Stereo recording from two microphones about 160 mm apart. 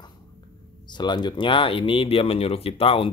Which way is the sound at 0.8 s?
30° left (ahead or behind).